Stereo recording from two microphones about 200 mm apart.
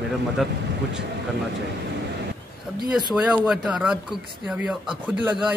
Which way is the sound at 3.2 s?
5° right (ahead or behind).